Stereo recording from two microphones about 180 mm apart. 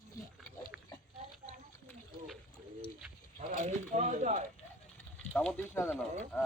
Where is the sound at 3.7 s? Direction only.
40° right (ahead or behind).